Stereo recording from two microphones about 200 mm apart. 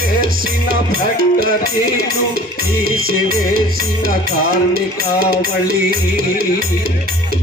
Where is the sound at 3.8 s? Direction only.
45° right (ahead or behind).